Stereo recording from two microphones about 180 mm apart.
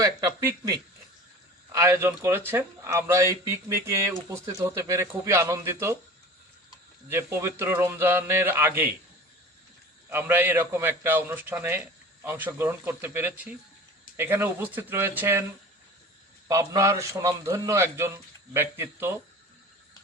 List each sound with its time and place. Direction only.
0.4 s a man's voice: 20° right (ahead or behind)
7.1 s a man's voice: 15° right (ahead or behind)
10.1 s a man's voice: 10° right (ahead or behind)
16.5 s a man's voice: 15° right (ahead or behind)